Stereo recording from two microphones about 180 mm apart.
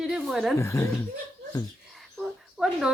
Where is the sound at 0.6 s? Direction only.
15° left (ahead or behind).